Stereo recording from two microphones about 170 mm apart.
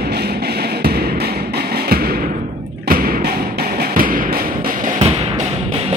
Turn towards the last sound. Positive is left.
turn(degrees=-40)  # may be behind; listen again after turning